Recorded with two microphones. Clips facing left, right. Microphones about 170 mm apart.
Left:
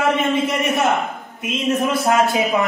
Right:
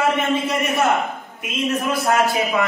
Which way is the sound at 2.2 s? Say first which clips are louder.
Left 2 dB; 20° left (ahead or behind).